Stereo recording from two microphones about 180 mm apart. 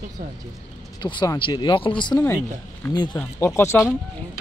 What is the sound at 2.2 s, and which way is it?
Speech, 10° left (ahead or behind).